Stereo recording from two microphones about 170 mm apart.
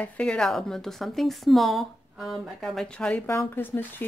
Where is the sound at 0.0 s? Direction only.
5° left (ahead or behind).